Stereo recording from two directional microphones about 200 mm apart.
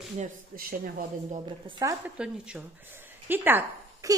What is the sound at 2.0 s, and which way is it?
A woman's voice, 5° right (ahead or behind).